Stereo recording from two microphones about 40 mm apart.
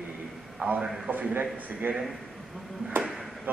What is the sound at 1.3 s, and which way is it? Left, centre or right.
Speech, right.